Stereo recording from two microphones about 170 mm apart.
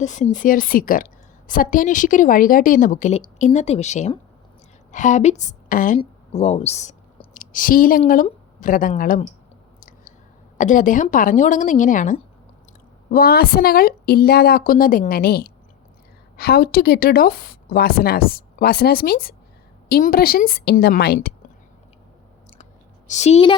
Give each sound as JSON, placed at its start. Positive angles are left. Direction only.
{"t": 0.0, "sound": "a woman's voice", "side_deg": 45}
{"t": 6.0, "sound": "a woman's voice", "side_deg": 40}
{"t": 10.6, "sound": "a woman's voice", "side_deg": 50}
{"t": 13.1, "sound": "a woman's voice", "side_deg": 60}
{"t": 23.0, "sound": "a woman's voice", "side_deg": 40}